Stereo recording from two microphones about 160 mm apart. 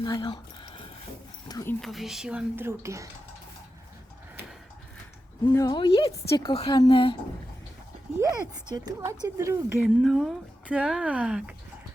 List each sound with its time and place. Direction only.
0.0 s a sound: 25° left (ahead or behind)
1.5 s speech: 20° left (ahead or behind)
1.8 s speech: centre (ahead or behind); by 3.1 s 20° right (ahead or behind)
5.5 s a woman's voice: 20° left (ahead or behind)
8.7 s speech: 20° right (ahead or behind)
9.8 s speech: centre (ahead or behind)